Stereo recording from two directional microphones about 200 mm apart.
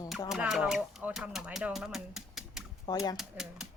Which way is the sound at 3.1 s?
Centre (ahead or behind).